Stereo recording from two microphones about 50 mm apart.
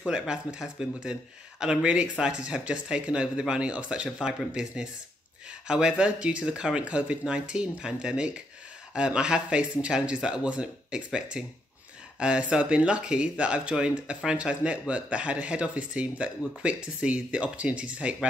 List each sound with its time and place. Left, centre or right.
0.1 s speech: centre